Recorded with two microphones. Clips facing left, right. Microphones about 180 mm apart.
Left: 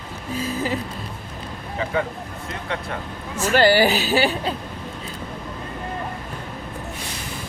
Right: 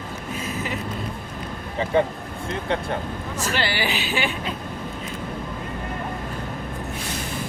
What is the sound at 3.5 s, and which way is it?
Speech, 45° left (ahead or behind).